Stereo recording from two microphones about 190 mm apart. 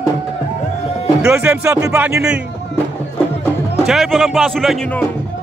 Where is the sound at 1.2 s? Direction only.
10° right (ahead or behind).